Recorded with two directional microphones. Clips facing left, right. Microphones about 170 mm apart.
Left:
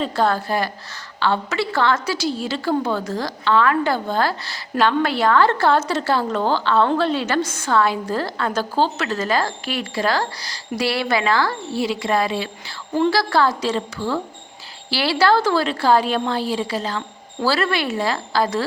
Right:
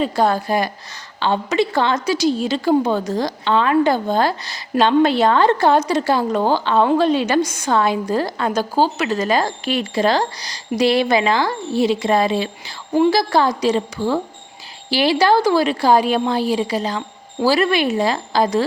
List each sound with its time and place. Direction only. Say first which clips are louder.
0.0 s a woman's voice: right 2 dB; 15° right (ahead or behind)